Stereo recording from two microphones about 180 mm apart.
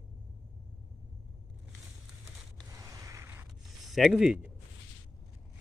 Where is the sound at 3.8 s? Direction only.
Centre (ahead or behind).